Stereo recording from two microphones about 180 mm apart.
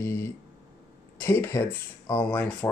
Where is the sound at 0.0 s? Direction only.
15° left (ahead or behind).